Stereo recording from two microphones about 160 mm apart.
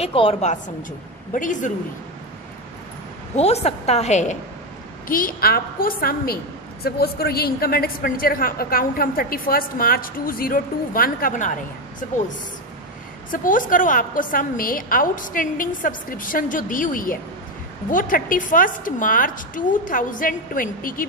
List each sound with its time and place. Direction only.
0.0 s a woman's voice: 35° left (ahead or behind)
1.3 s speech: 55° left (ahead or behind)
3.3 s a woman's voice: 40° left (ahead or behind)
5.0 s a woman's voice: 60° left (ahead or behind)
13.3 s a woman's voice: 55° left (ahead or behind)